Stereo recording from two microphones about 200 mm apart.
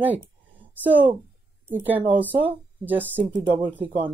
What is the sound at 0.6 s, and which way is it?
A woman's voice, 10° right (ahead or behind).